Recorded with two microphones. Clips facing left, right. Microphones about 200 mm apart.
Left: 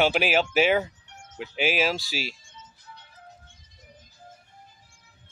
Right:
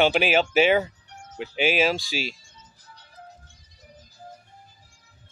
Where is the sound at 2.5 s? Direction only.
40° right (ahead or behind).